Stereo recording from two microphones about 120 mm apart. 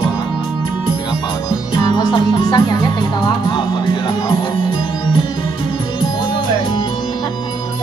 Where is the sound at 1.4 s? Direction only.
35° left (ahead or behind).